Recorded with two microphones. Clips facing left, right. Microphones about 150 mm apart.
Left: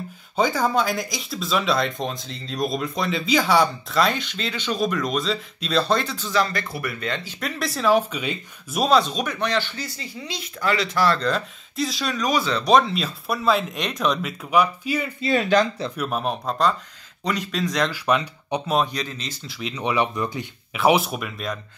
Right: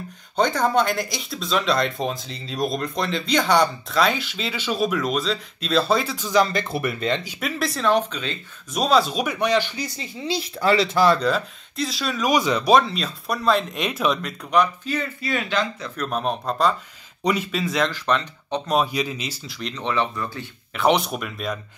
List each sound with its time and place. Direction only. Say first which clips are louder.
0.4 s speech: right 1 dB; 5° left (ahead or behind); by 7.2 s 25° right (ahead or behind)
7.2 s speech: right 2 dB; 5° right (ahead or behind)
8.8 s speech: even; 5° right (ahead or behind)
10.2 s speech: right 5 dB; 30° right (ahead or behind)
11.1 s speech: right 3 dB; 5° right (ahead or behind)
12.3 s speech: right 3 dB; 15° right (ahead or behind)
12.7 s speech: left 2 dB; centre (ahead or behind)
15.1 s speech: left 5 dB; 25° left (ahead or behind)
16.0 s speech: right 2 dB; 5° left (ahead or behind)
17.9 s speech: left 1 dB; 10° left (ahead or behind)
18.8 s speech: right 1 dB; 10° right (ahead or behind)
19.5 s speech: left 2 dB; 5° left (ahead or behind)